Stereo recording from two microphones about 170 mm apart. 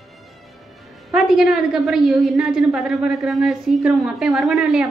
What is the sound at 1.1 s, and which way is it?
A woman's voice, centre (ahead or behind).